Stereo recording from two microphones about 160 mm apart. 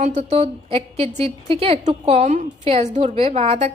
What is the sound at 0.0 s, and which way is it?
A woman's voice, 50° right (ahead or behind).